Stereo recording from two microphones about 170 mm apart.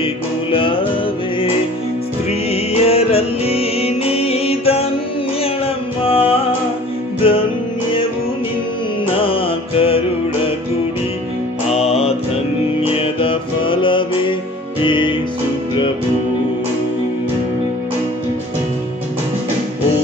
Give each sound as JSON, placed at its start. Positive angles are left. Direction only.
{"t": 0.0, "sound": "music", "side_deg": 30}
{"t": 2.5, "sound": "music", "side_deg": 35}
{"t": 6.0, "sound": "music", "side_deg": 35}
{"t": 9.2, "sound": "music", "side_deg": 30}
{"t": 11.7, "sound": "music", "side_deg": 35}